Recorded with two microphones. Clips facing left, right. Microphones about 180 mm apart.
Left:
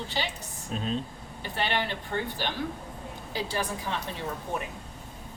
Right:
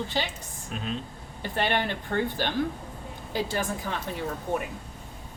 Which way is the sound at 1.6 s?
50° right (ahead or behind).